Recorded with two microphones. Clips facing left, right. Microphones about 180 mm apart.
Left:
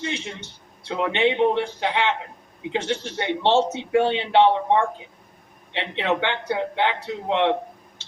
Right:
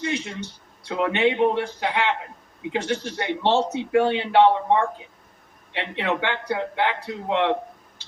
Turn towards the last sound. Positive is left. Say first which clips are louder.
# left 1 dB
turn(degrees=25)  # may be behind; listen again after turning